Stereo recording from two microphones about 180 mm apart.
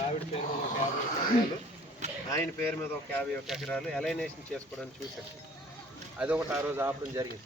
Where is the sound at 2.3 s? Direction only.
15° left (ahead or behind).